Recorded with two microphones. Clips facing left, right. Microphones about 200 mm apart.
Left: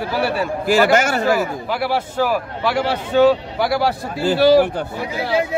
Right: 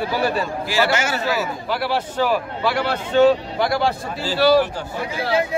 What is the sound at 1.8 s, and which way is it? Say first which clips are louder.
A man's voice: left 2 dB; 10° left (ahead or behind).